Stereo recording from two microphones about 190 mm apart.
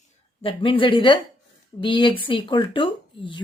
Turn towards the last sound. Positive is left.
turn(degrees=25)  # may be behind; listen again after turning